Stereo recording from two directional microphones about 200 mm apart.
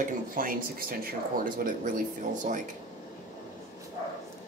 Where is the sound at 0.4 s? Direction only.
45° right (ahead or behind).